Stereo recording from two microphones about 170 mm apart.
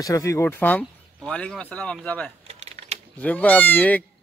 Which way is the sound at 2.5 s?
40° right (ahead or behind).